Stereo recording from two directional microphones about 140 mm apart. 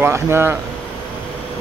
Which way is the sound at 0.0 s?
15° right (ahead or behind).